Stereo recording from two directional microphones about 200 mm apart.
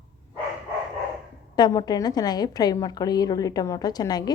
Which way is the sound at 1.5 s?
20° left (ahead or behind).